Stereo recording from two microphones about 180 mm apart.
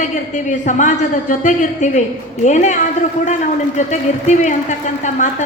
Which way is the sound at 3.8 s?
40° left (ahead or behind).